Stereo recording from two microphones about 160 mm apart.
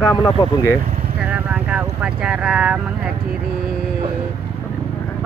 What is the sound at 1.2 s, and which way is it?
Speech, 10° right (ahead or behind).